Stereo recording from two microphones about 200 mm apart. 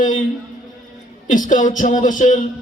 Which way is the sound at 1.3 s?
40° left (ahead or behind).